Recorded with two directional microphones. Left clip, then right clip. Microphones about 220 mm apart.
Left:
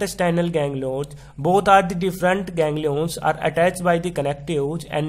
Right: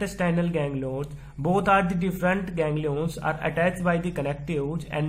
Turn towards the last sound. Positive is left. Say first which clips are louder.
# left 6 dB
turn(degrees=45)  # may be behind; listen again after turning